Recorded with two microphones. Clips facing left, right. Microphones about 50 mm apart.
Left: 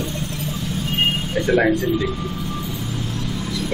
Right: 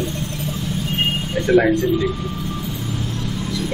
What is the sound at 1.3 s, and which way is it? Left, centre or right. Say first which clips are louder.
Speech: right 3 dB; centre.